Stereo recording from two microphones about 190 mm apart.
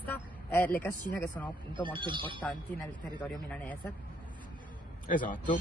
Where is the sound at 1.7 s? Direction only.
25° right (ahead or behind).